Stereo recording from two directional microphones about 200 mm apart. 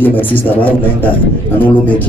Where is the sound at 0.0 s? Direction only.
10° left (ahead or behind).